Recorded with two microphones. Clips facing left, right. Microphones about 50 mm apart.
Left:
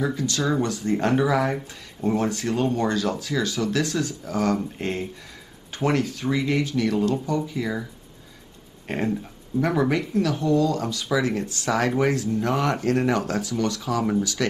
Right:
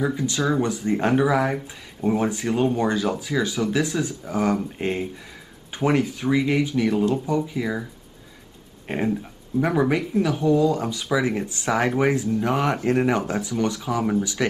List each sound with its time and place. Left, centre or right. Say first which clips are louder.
0.0 s speech: right 1 dB; centre